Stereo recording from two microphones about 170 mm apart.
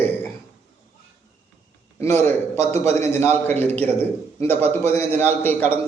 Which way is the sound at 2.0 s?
15° left (ahead or behind).